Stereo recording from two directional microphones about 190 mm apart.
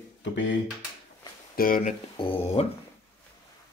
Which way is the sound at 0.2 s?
75° left (ahead or behind).